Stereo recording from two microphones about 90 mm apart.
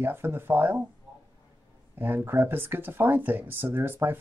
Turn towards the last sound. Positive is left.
turn(degrees=-25)  # may be behind; listen again after turning